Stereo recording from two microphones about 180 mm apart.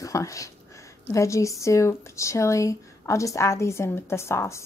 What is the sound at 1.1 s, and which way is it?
Speech, 15° left (ahead or behind).